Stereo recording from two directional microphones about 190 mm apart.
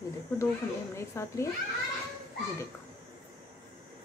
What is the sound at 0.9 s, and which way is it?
Speech, 15° left (ahead or behind).